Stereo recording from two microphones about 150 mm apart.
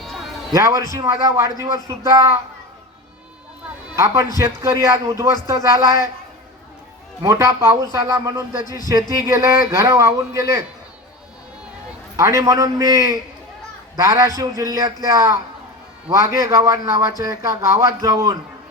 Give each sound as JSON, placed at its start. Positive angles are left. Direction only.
{"t": 0.5, "sound": "speech", "side_deg": -20}
{"t": 3.9, "sound": "speech", "side_deg": -20}
{"t": 7.2, "sound": "speech", "side_deg": -20}
{"t": 12.1, "sound": "speech", "side_deg": -20}